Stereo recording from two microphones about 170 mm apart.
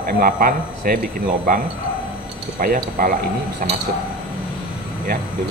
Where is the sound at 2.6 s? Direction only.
55° right (ahead or behind).